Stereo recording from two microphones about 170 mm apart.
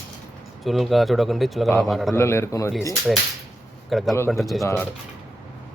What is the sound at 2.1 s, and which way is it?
Speech, 15° left (ahead or behind).